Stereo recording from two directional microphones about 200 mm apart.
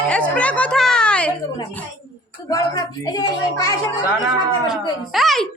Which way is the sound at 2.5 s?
15° left (ahead or behind).